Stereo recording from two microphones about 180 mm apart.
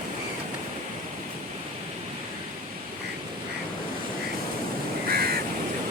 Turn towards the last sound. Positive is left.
turn(degrees=-55)  # may be behind; listen again after turning